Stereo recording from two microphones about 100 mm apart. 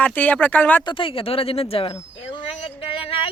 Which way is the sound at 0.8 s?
60° left (ahead or behind).